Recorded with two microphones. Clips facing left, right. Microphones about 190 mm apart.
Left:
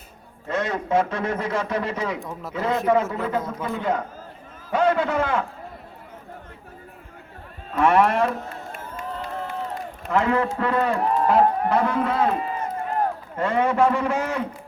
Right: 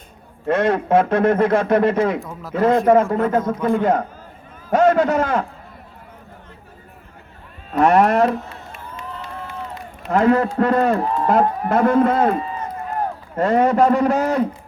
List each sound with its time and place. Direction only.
0.4 s a man's voice: 60° right (ahead or behind); by 5.5 s 40° right (ahead or behind)
7.7 s a man's voice: 40° right (ahead or behind)
8.4 s crowd: 50° left (ahead or behind)
10.1 s a man's voice: 40° right (ahead or behind)
13.3 s a man's voice: 40° right (ahead or behind)